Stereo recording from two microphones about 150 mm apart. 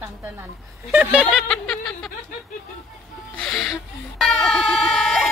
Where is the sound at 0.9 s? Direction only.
10° right (ahead or behind).